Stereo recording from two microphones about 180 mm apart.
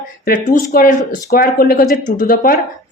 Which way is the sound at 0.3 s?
50° left (ahead or behind).